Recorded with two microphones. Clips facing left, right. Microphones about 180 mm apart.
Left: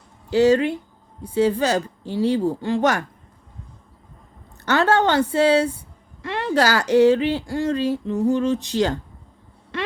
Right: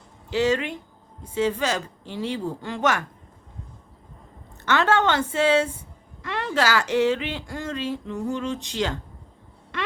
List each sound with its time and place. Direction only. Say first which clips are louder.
0.3 s speech: left 7 dB; 35° left (ahead or behind)
4.6 s speech: left 3 dB; 35° left (ahead or behind)
9.7 s a sound: left 3 dB; 30° left (ahead or behind)